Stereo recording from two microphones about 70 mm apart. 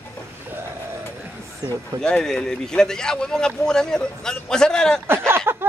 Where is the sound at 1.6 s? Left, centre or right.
Right.